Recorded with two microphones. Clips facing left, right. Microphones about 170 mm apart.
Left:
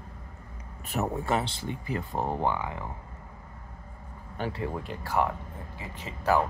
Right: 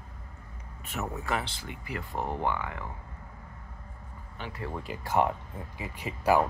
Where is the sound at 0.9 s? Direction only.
35° left (ahead or behind).